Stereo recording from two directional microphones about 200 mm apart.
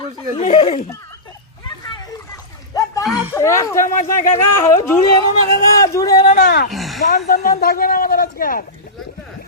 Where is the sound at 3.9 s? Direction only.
40° left (ahead or behind).